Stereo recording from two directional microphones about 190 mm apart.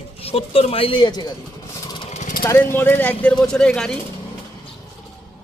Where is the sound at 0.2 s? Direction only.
30° left (ahead or behind).